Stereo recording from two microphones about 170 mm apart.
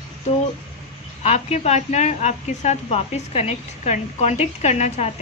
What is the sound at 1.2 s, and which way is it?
A woman's voice, 40° left (ahead or behind).